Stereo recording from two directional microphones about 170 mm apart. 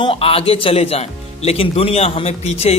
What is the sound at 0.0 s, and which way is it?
Speech, 35° left (ahead or behind).